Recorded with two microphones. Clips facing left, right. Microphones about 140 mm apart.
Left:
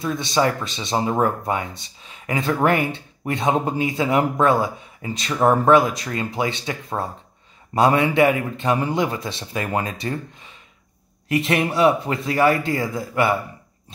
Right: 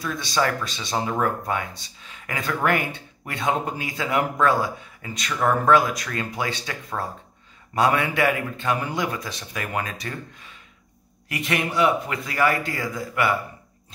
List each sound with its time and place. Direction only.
0.0 s speech: 25° left (ahead or behind)